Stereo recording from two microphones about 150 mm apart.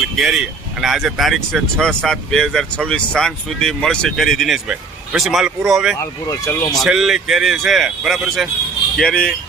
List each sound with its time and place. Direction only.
0.0 s speech: 5° right (ahead or behind)
6.0 s speech: 20° left (ahead or behind)
6.7 s speech: centre (ahead or behind)